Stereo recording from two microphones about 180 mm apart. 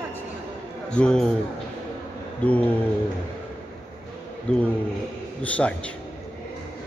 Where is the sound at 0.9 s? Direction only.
5° left (ahead or behind).